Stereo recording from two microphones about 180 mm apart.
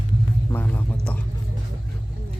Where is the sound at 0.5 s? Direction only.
10° left (ahead or behind).